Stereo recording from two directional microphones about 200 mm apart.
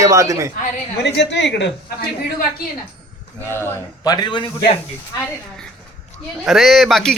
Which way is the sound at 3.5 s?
15° left (ahead or behind).